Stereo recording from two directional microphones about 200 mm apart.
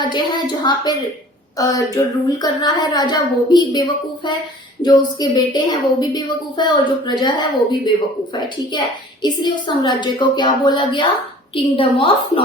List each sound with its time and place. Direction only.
0.0 s a woman's voice: 20° left (ahead or behind)